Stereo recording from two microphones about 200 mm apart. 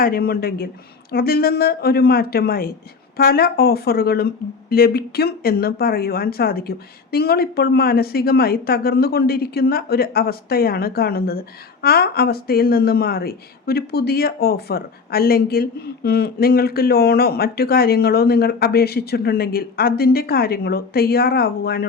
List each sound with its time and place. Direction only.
0.0 s speech: 50° left (ahead or behind)